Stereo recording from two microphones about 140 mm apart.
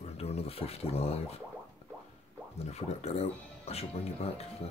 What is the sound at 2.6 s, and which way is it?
Speech, 50° left (ahead or behind).